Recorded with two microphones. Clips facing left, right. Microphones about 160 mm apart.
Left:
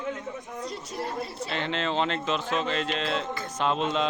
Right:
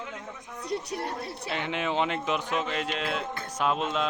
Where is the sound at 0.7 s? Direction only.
65° right (ahead or behind).